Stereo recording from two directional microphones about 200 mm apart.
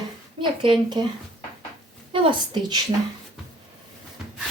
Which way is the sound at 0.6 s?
25° right (ahead or behind).